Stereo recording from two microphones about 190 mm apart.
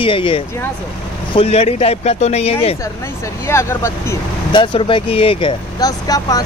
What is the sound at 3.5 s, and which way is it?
Speech, 15° left (ahead or behind).